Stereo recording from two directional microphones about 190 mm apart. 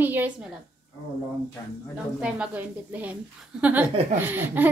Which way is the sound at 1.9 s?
5° right (ahead or behind).